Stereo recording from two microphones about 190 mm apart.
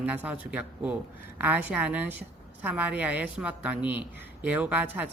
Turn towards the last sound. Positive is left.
turn(degrees=-10)  # may be behind; listen again after turning